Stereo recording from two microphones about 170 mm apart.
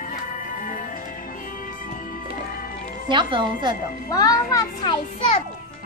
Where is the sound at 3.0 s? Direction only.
30° right (ahead or behind).